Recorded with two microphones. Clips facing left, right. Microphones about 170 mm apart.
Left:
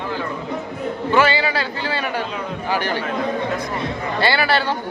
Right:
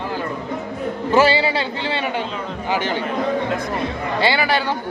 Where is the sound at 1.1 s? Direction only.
35° right (ahead or behind).